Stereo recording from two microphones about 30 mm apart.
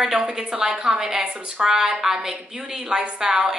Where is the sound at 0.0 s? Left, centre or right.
Centre.